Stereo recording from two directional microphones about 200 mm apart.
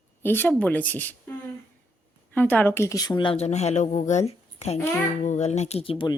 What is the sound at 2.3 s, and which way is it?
Speech, 5° left (ahead or behind).